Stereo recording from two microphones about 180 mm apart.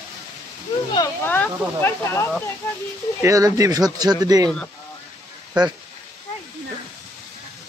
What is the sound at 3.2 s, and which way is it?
Speech, 20° right (ahead or behind).